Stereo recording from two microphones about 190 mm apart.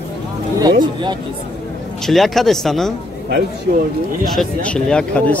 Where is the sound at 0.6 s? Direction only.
20° right (ahead or behind).